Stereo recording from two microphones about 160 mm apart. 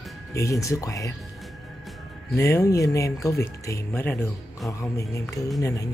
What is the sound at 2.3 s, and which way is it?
Speech, 15° left (ahead or behind).